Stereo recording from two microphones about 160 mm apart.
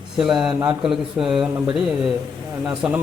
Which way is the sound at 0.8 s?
5° right (ahead or behind).